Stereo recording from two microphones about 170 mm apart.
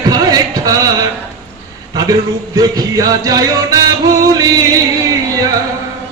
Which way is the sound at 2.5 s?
20° right (ahead or behind).